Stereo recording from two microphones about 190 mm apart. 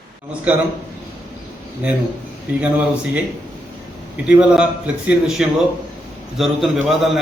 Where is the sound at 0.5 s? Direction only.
10° right (ahead or behind).